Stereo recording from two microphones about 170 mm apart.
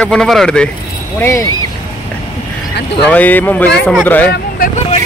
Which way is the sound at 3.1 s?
10° left (ahead or behind).